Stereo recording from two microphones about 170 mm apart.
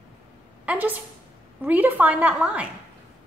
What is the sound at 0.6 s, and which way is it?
A woman's voice, 10° right (ahead or behind).